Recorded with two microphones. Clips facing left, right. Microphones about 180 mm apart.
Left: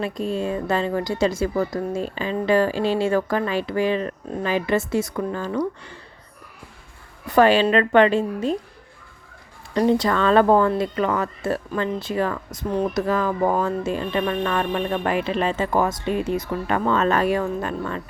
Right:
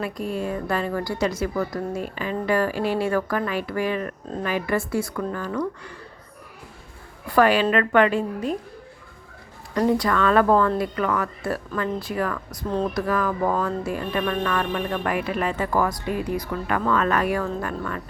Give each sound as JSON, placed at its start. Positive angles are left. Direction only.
{"t": 0.0, "sound": "speech", "side_deg": 25}
{"t": 7.3, "sound": "speech", "side_deg": 25}
{"t": 10.0, "sound": "speech", "side_deg": 30}